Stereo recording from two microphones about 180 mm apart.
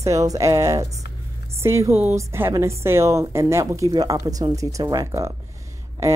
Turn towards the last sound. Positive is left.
turn(degrees=-15)  # may be behind; listen again after turning